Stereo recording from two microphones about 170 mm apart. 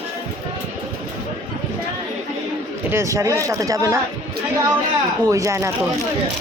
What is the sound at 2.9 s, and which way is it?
Speech, 15° right (ahead or behind).